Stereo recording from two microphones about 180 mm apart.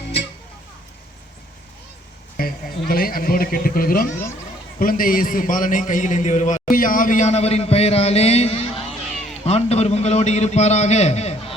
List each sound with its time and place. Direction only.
2.4 s a man's voice: 55° left (ahead or behind); by 11.5 s 35° left (ahead or behind)